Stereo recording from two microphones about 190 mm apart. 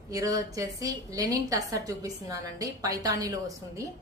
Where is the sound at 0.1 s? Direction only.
20° right (ahead or behind).